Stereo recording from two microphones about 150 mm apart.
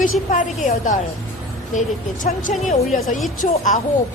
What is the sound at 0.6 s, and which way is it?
Speech, 60° left (ahead or behind).